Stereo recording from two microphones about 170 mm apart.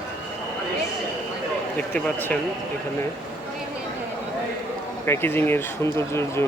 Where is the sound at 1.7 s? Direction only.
10° left (ahead or behind).